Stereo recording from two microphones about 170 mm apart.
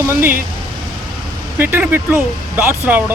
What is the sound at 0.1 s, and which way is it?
Speech, 15° right (ahead or behind).